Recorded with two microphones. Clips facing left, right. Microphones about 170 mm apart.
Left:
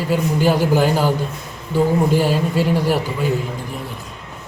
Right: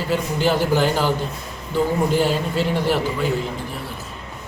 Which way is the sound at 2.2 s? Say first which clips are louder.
Left 2 dB; 10° left (ahead or behind).